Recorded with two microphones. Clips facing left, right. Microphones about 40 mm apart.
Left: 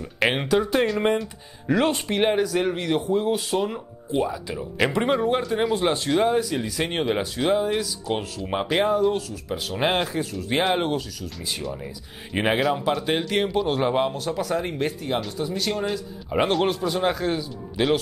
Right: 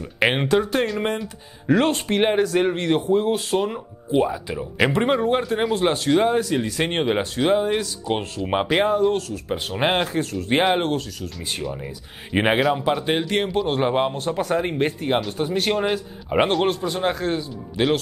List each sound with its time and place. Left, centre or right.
0.0 s speech: centre
8.8 s speech: centre
9.5 s speech: centre
9.9 s speech: centre
10.8 s speech: centre
11.1 s speech: centre
14.1 s speech: right
15.3 s speech: right
16.3 s speech: right
16.6 s speech: centre